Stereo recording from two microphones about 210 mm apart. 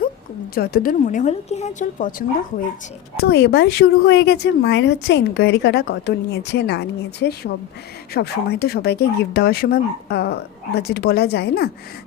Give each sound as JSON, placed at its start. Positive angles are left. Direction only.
{"t": 0.5, "sound": "speech", "side_deg": 45}
{"t": 3.2, "sound": "speech", "side_deg": 50}